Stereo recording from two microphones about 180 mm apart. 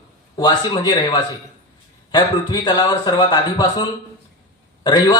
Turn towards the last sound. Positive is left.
turn(degrees=25)  # may be behind; listen again after turning